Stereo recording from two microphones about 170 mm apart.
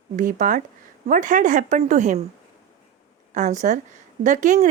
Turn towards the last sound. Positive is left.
turn(degrees=-45)  # may be behind; listen again after turning